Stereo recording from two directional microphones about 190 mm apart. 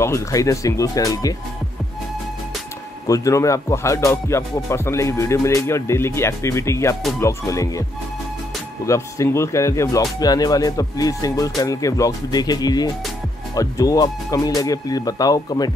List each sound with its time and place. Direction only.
0.0 s speech: 15° left (ahead or behind)
3.1 s speech: 15° left (ahead or behind)
8.8 s speech: 15° left (ahead or behind)